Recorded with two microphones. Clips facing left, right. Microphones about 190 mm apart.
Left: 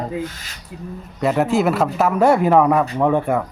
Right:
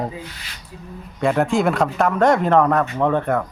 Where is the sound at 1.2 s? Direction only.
5° left (ahead or behind).